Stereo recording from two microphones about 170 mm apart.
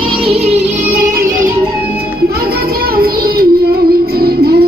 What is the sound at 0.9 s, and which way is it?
Music, 60° right (ahead or behind).